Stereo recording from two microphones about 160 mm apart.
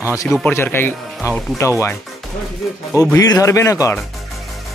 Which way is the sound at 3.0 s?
20° left (ahead or behind).